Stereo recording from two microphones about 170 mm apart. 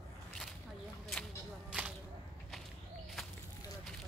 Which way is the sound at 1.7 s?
10° right (ahead or behind).